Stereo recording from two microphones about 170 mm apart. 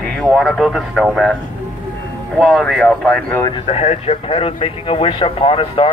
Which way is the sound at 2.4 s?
Centre (ahead or behind).